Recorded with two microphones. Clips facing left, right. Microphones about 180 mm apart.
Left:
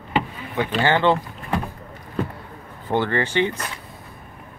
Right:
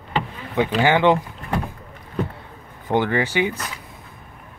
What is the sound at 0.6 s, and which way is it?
Speech, 15° right (ahead or behind).